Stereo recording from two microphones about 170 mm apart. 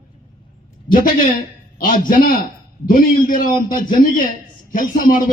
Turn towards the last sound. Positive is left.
turn(degrees=55)  # may be behind; listen again after turning